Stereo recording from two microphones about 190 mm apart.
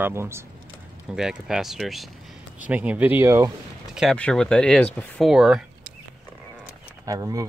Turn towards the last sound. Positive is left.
turn(degrees=-15)  # may be behind; listen again after turning